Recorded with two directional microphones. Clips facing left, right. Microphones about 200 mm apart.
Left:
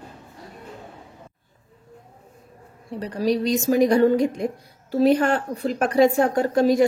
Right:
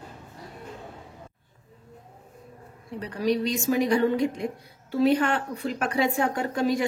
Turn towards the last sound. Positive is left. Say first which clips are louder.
# left 7 dB
turn(degrees=40)  # may be behind; listen again after turning